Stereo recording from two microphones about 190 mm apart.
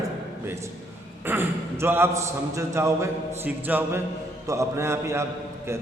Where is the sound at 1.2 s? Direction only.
10° right (ahead or behind).